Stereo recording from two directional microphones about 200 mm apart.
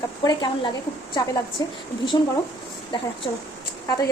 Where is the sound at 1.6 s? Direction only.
20° left (ahead or behind).